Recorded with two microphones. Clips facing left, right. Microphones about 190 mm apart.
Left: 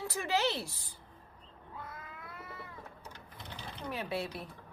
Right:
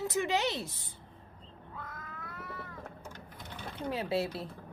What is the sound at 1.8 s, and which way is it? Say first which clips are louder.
Cat: right 1 dB; 10° left (ahead or behind).